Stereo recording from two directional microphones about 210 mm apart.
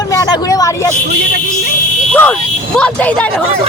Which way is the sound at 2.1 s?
10° left (ahead or behind).